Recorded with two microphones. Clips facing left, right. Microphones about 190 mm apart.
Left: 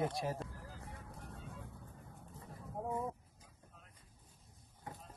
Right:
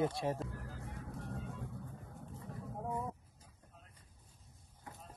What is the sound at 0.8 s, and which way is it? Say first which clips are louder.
Vehicle: right 5 dB; 70° right (ahead or behind).